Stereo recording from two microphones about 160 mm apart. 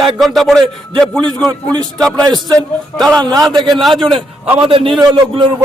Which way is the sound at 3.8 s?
Centre (ahead or behind).